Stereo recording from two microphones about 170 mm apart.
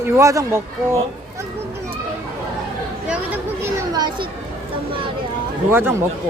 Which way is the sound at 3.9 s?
25° right (ahead or behind).